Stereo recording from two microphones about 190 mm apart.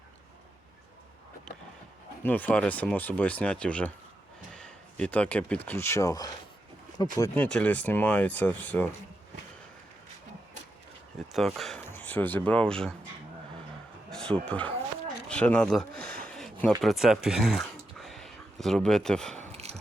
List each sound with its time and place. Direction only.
2.2 s speech: 10° left (ahead or behind)
7.2 s speech: 5° left (ahead or behind)
11.3 s speech: centre (ahead or behind)
14.1 s speech: 5° left (ahead or behind)
15.3 s a sound: 5° left (ahead or behind)
16.8 s speech: centre (ahead or behind)
19.4 s a sound: 35° right (ahead or behind)